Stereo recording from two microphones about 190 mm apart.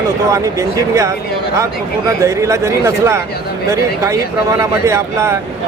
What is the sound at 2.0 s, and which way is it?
Speech, 15° right (ahead or behind).